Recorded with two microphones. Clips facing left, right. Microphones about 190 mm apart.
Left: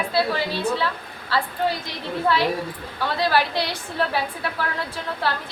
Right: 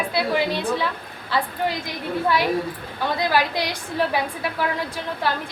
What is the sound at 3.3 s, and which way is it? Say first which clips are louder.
Speech: even; 15° right (ahead or behind).